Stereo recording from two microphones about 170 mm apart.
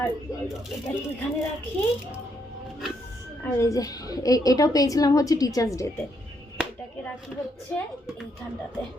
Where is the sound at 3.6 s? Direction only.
20° left (ahead or behind).